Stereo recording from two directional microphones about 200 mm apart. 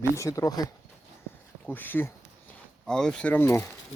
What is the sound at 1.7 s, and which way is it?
Speech, 10° left (ahead or behind).